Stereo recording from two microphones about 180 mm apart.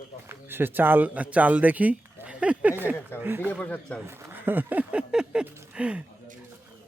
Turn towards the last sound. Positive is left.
turn(degrees=-5)  # may be behind; listen again after turning